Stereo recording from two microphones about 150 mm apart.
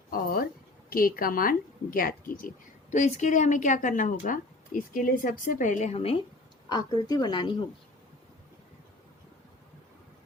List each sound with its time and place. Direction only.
0.1 s a sound: 75° left (ahead or behind)
0.9 s a woman's voice: 70° left (ahead or behind)
2.9 s a woman's voice: 55° left (ahead or behind)
6.7 s a woman's voice: 25° left (ahead or behind)